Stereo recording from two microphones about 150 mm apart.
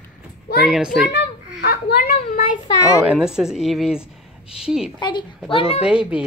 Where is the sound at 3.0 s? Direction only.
5° right (ahead or behind).